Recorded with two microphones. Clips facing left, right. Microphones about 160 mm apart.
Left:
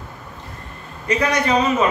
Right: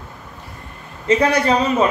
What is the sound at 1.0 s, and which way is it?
Speech, 30° right (ahead or behind).